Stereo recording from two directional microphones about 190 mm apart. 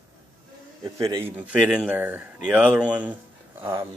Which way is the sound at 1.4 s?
5° right (ahead or behind).